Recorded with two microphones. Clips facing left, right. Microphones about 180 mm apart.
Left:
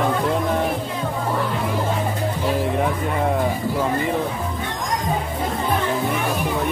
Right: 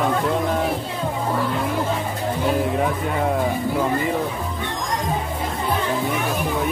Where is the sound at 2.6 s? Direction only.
Centre (ahead or behind).